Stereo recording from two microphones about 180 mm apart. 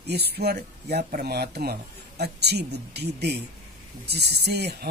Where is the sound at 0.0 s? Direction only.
65° right (ahead or behind).